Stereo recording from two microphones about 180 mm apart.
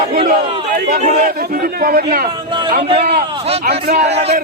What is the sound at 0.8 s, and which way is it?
Speech, 40° right (ahead or behind).